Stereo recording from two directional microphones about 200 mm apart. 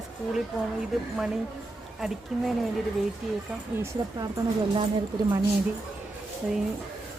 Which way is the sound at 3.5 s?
15° right (ahead or behind).